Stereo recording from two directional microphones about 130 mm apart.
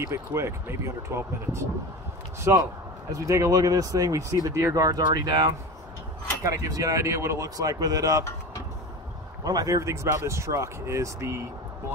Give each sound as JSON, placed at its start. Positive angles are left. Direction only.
{"t": 0.0, "sound": "speech", "side_deg": -20}
{"t": 9.4, "sound": "speech", "side_deg": -30}